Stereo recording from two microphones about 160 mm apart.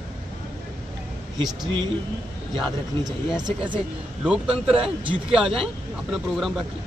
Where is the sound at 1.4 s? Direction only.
25° right (ahead or behind).